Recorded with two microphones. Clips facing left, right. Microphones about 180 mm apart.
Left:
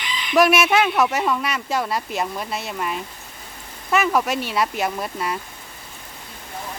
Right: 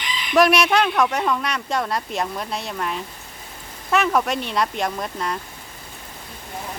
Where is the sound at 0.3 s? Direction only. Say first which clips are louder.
Even; centre (ahead or behind).